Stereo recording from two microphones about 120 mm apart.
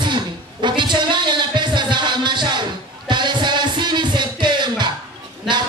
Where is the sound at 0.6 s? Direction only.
40° right (ahead or behind).